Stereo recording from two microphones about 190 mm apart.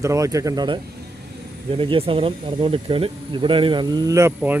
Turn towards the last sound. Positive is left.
turn(degrees=-10)  # may be behind; listen again after turning